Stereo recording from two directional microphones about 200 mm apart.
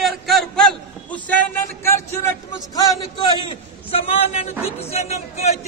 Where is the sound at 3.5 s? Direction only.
30° left (ahead or behind).